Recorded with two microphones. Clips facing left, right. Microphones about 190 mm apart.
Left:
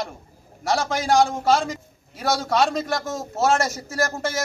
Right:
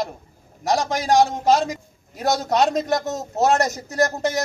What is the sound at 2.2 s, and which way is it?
A man's voice, 20° right (ahead or behind).